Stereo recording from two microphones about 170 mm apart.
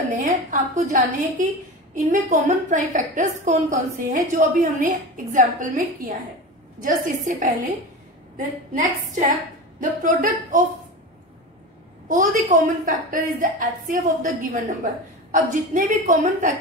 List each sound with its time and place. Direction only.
0.1 s a woman's voice: 45° right (ahead or behind)
12.1 s a woman's voice: 50° right (ahead or behind)